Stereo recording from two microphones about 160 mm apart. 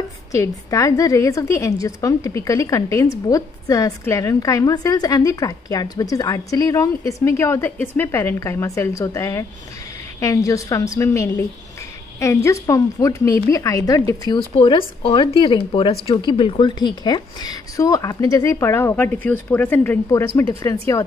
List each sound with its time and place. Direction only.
0.3 s a woman's voice: 20° left (ahead or behind)
14.6 s a woman's voice: 30° left (ahead or behind)